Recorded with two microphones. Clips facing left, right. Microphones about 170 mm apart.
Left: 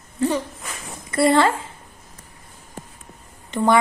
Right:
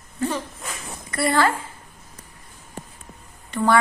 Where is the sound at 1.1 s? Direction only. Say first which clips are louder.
Left 4 dB; 25° left (ahead or behind).